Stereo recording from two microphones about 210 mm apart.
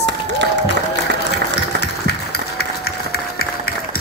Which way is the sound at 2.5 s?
50° left (ahead or behind).